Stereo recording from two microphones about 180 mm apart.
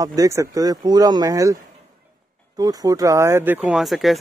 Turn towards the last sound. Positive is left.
turn(degrees=0)  # may be behind; listen again after turning